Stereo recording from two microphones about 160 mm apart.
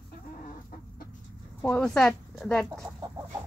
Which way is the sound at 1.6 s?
5° left (ahead or behind).